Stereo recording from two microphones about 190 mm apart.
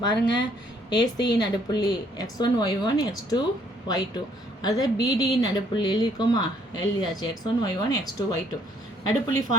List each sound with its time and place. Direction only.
0.9 s speech: 20° left (ahead or behind)